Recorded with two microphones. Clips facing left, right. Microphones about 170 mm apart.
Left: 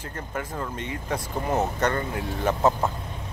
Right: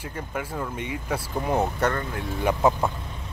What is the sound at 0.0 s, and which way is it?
Speech, 10° right (ahead or behind).